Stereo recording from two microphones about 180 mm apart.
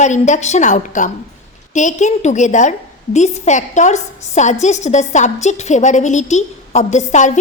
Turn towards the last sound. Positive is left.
turn(degrees=40)  # may be behind; listen again after turning